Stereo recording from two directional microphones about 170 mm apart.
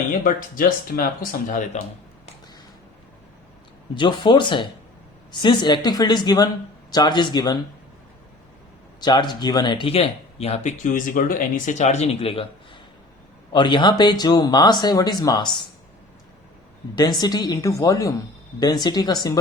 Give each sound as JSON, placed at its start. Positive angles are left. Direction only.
{"t": 0.1, "sound": "speech", "side_deg": 55}
{"t": 3.9, "sound": "speech", "side_deg": 25}
{"t": 9.0, "sound": "speech", "side_deg": 25}
{"t": 13.5, "sound": "speech", "side_deg": 25}
{"t": 16.9, "sound": "speech", "side_deg": 25}